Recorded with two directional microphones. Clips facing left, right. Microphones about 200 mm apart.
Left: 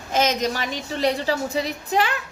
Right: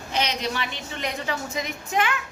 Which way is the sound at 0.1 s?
45° left (ahead or behind).